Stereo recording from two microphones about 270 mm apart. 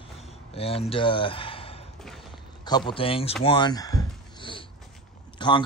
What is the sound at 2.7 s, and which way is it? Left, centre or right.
Speech, centre.